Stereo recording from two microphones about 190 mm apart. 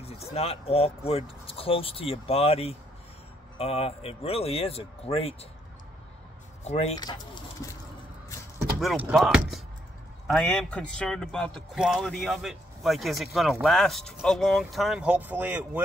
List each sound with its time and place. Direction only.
0.0 s speech: 30° left (ahead or behind)
6.6 s speech: 35° left (ahead or behind)
8.7 s speech: 5° right (ahead or behind)